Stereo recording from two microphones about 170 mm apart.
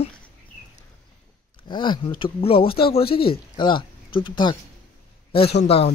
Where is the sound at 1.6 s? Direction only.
25° left (ahead or behind).